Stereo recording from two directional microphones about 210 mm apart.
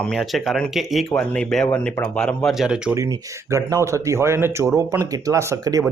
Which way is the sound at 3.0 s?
15° right (ahead or behind).